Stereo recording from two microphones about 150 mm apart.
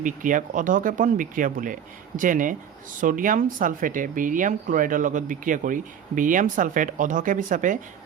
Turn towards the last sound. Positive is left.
turn(degrees=-60)  # may be behind; listen again after turning